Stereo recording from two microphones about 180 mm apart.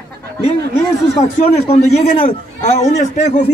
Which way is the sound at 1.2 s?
35° left (ahead or behind).